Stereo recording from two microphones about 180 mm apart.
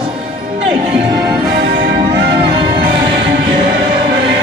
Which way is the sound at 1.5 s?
70° right (ahead or behind).